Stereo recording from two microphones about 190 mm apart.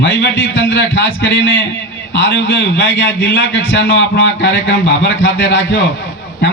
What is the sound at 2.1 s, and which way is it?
A man's voice, 75° left (ahead or behind).